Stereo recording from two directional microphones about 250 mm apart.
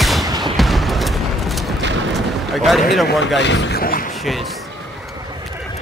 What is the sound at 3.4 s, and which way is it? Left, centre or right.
Speech, left.